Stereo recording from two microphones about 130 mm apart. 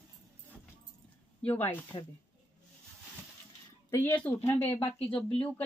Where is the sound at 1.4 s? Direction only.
15° left (ahead or behind).